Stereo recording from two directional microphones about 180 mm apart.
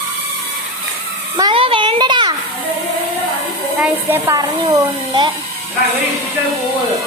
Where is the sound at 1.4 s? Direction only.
25° right (ahead or behind).